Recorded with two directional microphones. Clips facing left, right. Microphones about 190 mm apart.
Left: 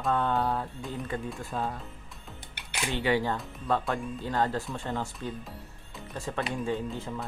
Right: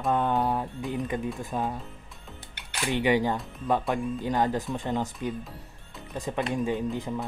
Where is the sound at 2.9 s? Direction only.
15° right (ahead or behind).